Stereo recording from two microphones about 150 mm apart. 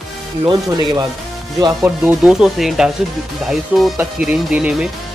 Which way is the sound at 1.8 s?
10° right (ahead or behind).